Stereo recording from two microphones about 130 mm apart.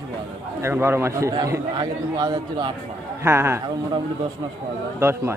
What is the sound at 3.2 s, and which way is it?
Speech, 20° right (ahead or behind).